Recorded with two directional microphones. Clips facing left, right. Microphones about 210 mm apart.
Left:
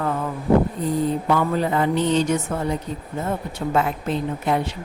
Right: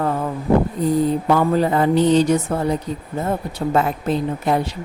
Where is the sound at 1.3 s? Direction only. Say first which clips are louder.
Right 4 dB; 40° right (ahead or behind).